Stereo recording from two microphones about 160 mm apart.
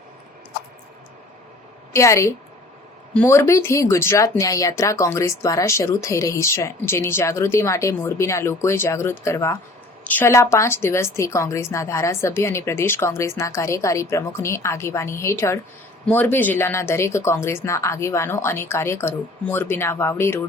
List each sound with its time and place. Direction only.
1.9 s a woman's voice: 20° left (ahead or behind)